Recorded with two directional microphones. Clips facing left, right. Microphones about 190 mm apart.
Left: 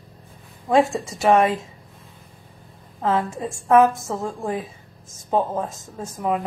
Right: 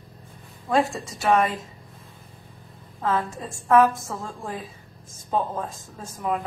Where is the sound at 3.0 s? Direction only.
25° left (ahead or behind).